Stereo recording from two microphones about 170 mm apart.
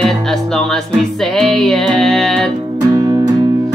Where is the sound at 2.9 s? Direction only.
20° right (ahead or behind).